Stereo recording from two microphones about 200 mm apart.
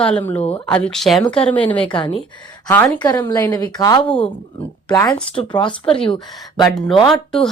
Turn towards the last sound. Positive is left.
turn(degrees=0)  # may be behind; listen again after turning